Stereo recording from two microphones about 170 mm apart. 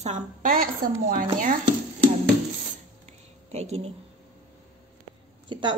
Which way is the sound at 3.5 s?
40° right (ahead or behind).